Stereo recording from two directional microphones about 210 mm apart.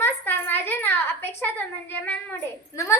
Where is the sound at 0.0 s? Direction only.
10° left (ahead or behind).